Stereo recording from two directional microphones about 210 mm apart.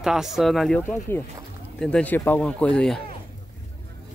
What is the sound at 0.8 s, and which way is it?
Speech, 10° left (ahead or behind).